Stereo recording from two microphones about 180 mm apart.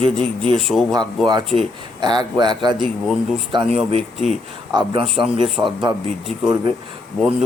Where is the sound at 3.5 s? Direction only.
35° right (ahead or behind).